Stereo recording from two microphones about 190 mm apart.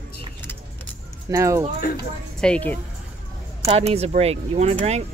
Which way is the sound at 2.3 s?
5° left (ahead or behind).